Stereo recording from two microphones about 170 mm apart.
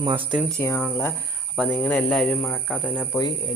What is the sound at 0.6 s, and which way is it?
Speech, 15° left (ahead or behind).